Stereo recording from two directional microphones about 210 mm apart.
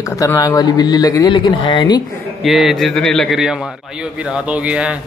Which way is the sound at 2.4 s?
Centre (ahead or behind).